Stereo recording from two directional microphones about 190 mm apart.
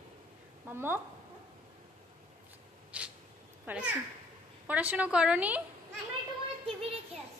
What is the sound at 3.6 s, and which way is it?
A child's voice, 5° right (ahead or behind).